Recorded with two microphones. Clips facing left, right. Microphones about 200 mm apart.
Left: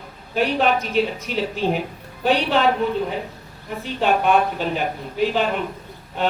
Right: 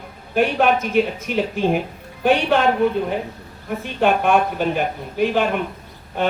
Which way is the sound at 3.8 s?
50° right (ahead or behind).